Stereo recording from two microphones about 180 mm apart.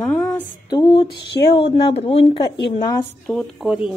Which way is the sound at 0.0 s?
5° left (ahead or behind).